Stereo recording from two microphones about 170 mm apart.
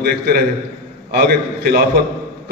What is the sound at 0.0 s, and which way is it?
A man's voice, 65° right (ahead or behind).